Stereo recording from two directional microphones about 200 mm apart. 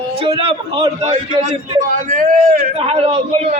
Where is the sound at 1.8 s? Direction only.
40° right (ahead or behind).